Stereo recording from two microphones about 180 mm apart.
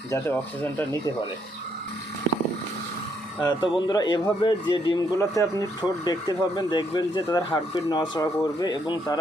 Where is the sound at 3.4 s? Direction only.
25° left (ahead or behind).